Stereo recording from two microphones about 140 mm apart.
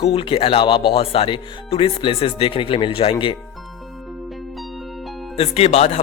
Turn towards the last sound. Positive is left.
turn(degrees=50)  # may be behind; listen again after turning